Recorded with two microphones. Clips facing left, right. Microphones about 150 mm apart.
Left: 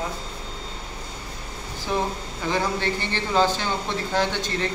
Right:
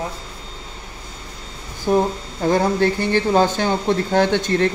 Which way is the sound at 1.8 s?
45° right (ahead or behind).